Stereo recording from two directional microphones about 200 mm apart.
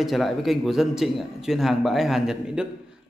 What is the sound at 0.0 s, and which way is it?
A man's voice, centre (ahead or behind).